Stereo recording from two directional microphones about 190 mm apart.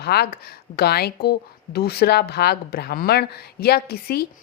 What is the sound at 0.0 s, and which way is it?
Speech, 55° left (ahead or behind).